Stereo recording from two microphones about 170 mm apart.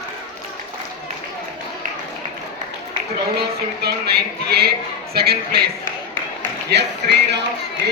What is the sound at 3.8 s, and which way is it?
Speech, 70° right (ahead or behind).